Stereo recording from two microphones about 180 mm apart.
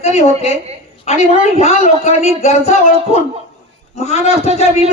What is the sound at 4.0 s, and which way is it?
Speech, 35° left (ahead or behind).